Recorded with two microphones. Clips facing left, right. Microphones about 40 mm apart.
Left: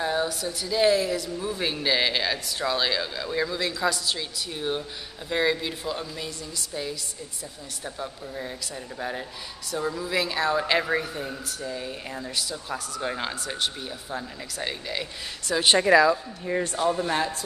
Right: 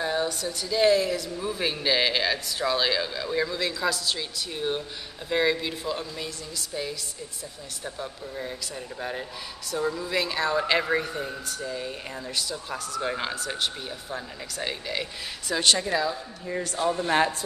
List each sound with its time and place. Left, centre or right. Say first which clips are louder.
0.0 s speech: left 1 dB; centre
15.9 s speech: left 9 dB; left
16.7 s speech: even; centre